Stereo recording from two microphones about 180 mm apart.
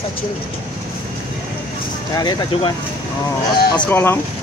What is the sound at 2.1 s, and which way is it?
Speech, 20° left (ahead or behind).